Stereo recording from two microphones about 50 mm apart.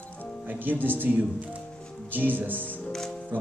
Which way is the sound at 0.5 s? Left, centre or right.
Right.